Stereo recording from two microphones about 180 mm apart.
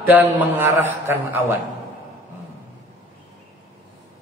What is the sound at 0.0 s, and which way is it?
A man's voice, 10° right (ahead or behind).